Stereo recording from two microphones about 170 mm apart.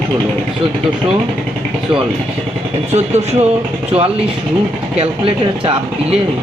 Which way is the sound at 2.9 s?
40° right (ahead or behind).